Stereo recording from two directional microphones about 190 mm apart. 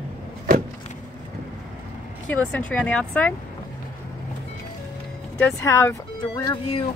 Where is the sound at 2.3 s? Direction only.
5° left (ahead or behind).